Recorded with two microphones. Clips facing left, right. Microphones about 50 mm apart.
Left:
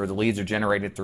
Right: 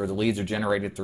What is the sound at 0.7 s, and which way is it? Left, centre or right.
Speech, left.